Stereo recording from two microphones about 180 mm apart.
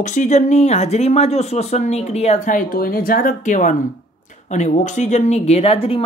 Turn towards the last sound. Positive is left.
turn(degrees=30)  # may be behind; listen again after turning